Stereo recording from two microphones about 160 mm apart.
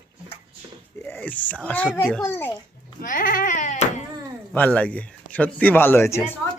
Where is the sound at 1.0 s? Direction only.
10° left (ahead or behind).